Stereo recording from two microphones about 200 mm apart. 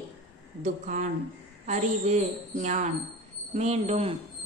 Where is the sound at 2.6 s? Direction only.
35° right (ahead or behind).